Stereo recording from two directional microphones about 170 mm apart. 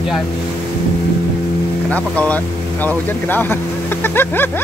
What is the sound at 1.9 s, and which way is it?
Speech, 10° left (ahead or behind).